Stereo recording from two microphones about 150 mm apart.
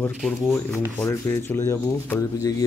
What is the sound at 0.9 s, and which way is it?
A man's voice, 15° left (ahead or behind).